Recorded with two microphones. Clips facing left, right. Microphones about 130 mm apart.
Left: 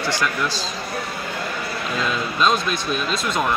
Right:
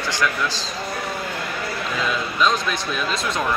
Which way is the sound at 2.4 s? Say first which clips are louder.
Left 1 dB; 20° left (ahead or behind).